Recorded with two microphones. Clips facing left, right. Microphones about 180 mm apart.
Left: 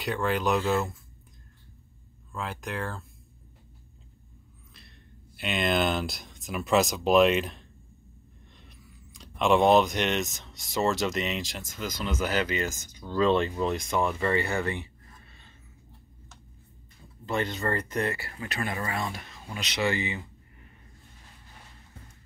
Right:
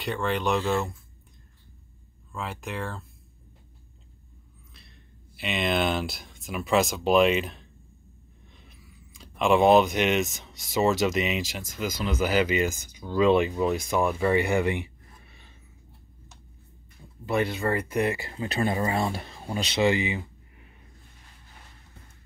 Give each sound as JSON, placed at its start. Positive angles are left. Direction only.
{"t": 0.0, "sound": "speech", "side_deg": 0}
{"t": 2.3, "sound": "speech", "side_deg": 0}
{"t": 4.7, "sound": "speech", "side_deg": 0}
{"t": 17.3, "sound": "speech", "side_deg": -10}
{"t": 19.9, "sound": "a sound", "side_deg": -15}